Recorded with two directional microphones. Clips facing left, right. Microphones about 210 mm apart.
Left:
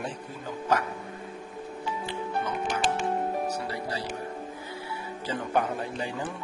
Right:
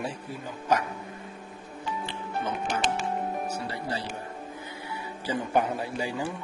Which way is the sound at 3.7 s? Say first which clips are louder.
Even; 25° right (ahead or behind).